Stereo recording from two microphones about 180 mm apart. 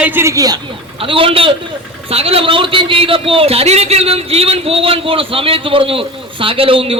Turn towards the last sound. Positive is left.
turn(degrees=-30)  # may be behind; listen again after turning